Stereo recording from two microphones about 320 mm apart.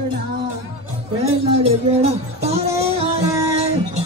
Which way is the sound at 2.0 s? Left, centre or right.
Centre.